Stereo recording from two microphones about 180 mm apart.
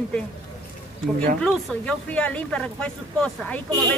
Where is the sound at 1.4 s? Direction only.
5° left (ahead or behind).